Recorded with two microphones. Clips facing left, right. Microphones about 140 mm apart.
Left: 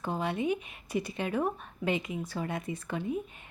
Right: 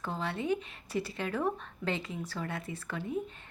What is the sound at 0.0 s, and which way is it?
A woman's voice, 15° left (ahead or behind).